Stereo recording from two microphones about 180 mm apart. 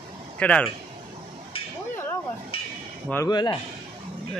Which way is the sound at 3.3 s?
25° left (ahead or behind).